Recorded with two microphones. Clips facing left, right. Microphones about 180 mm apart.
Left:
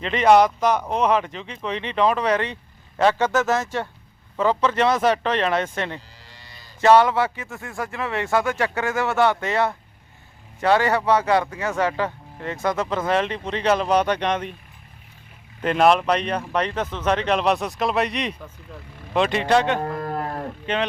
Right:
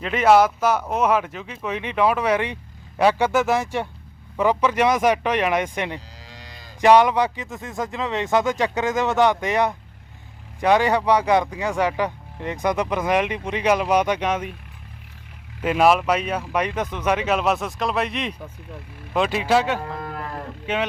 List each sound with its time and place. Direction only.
0.0 s speech: 5° right (ahead or behind)
6.2 s cattle: 90° right
6.8 s speech: 15° right (ahead or behind)
15.6 s speech: 5° right (ahead or behind)
19.8 s livestock: 40° left (ahead or behind)
20.7 s speech: 10° right (ahead or behind)